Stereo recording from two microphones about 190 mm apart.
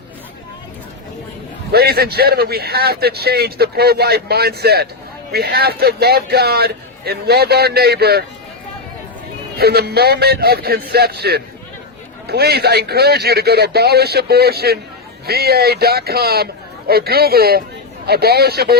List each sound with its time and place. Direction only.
1.7 s a man's voice: 55° right (ahead or behind)
9.6 s a man's voice: 55° right (ahead or behind)